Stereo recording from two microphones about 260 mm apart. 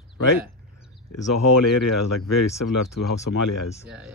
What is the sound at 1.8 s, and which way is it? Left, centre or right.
Speech, left.